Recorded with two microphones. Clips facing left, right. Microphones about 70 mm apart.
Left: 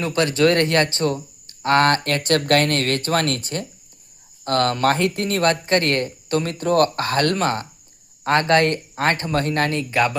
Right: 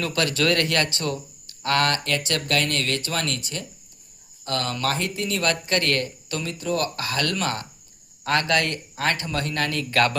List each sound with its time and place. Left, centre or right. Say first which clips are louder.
0.0 s speech: left 5 dB; left
5.5 s speech: left 4 dB; left
9.9 s speech: right 1 dB; centre